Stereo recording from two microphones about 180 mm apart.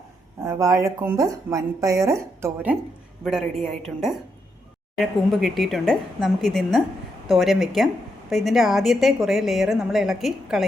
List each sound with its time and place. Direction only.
0.4 s speech: 15° right (ahead or behind)
3.2 s a woman's voice: centre (ahead or behind)